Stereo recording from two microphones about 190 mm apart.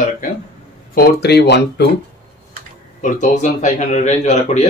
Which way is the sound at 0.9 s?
60° left (ahead or behind).